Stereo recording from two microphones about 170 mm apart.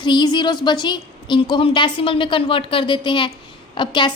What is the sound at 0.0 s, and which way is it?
A woman's voice, 25° left (ahead or behind).